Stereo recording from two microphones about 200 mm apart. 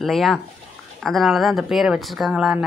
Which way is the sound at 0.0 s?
Centre (ahead or behind).